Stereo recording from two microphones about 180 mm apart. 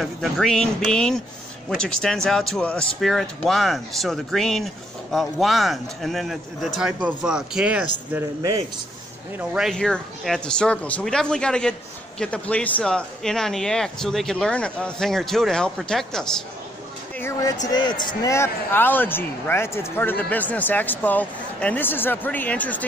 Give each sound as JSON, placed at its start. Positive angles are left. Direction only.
{"t": 0.0, "sound": "speech", "side_deg": 0}
{"t": 9.4, "sound": "speech", "side_deg": -5}
{"t": 17.2, "sound": "speech", "side_deg": 20}